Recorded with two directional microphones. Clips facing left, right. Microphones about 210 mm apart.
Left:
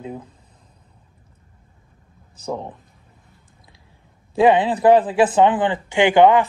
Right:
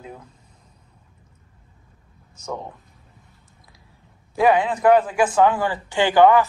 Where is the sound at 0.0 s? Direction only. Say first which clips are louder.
Left 7 dB; 30° left (ahead or behind).